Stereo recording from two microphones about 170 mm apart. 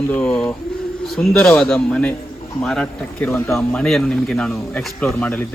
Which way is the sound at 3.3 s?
15° left (ahead or behind).